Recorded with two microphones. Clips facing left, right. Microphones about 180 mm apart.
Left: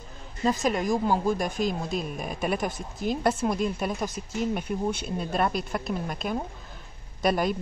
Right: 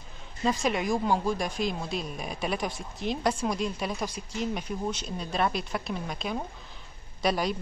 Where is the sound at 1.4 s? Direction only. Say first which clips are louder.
Left 3 dB; 45° left (ahead or behind).